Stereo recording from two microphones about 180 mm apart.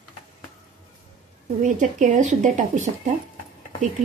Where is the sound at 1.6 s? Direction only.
45° right (ahead or behind).